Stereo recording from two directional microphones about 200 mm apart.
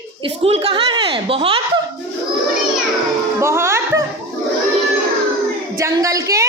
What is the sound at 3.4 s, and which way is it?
Music, 15° right (ahead or behind).